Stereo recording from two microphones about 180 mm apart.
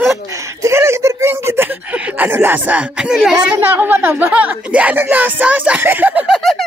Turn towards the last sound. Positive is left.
turn(degrees=0)  # may be behind; listen again after turning